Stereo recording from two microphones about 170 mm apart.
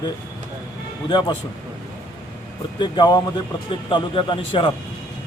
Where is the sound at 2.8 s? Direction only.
25° left (ahead or behind).